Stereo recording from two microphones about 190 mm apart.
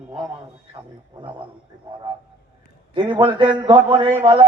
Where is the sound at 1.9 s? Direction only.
25° right (ahead or behind).